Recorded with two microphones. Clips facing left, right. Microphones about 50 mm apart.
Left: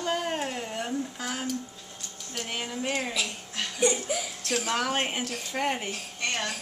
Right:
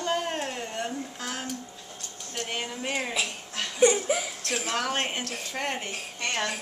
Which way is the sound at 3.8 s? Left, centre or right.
Right.